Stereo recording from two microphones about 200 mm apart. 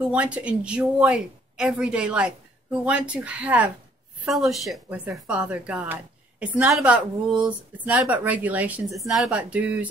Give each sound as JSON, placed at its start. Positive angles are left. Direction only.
{"t": 0.1, "sound": "speech", "side_deg": -5}